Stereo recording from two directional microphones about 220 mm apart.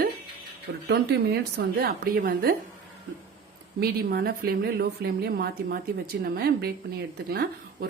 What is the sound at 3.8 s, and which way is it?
A woman's voice, 45° right (ahead or behind).